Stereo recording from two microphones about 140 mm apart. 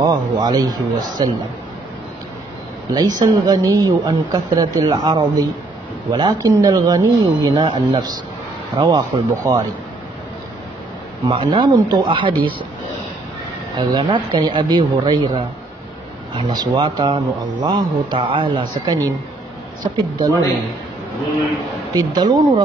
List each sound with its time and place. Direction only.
0.0 s a woman's voice: 30° right (ahead or behind)
2.9 s a woman's voice: 30° right (ahead or behind)
8.7 s a woman's voice: 25° right (ahead or behind)
11.2 s speech: 35° right (ahead or behind)
13.7 s speech: 35° right (ahead or behind)
21.9 s a woman's voice: 30° right (ahead or behind)